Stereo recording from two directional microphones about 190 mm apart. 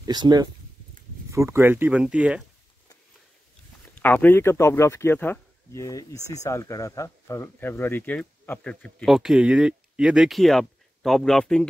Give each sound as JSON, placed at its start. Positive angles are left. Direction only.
{"t": 0.0, "sound": "speech", "side_deg": -20}
{"t": 4.0, "sound": "speech", "side_deg": 10}